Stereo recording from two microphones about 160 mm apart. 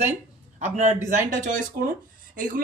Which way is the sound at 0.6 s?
45° right (ahead or behind).